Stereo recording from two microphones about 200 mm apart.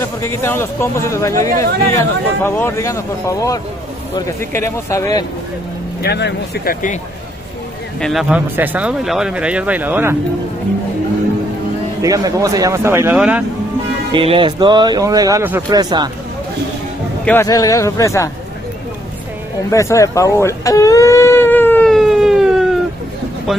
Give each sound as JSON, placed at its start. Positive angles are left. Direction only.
{"t": 0.0, "sound": "speech", "side_deg": 15}
{"t": 6.0, "sound": "speech", "side_deg": 55}
{"t": 8.0, "sound": "speech", "side_deg": 0}
{"t": 12.0, "sound": "speech", "side_deg": -15}
{"t": 14.1, "sound": "speech", "side_deg": -25}
{"t": 17.2, "sound": "speech", "side_deg": 10}
{"t": 19.7, "sound": "a sound", "side_deg": 15}